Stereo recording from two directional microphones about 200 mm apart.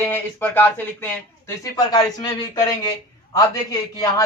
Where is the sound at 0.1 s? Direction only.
10° left (ahead or behind).